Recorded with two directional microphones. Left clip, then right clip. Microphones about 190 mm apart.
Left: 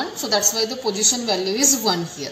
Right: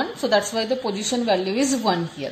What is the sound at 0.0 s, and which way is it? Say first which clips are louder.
A woman's voice: even; 45° right (ahead or behind).